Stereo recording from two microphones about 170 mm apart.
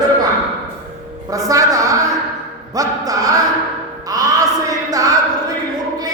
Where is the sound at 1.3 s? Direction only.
20° right (ahead or behind).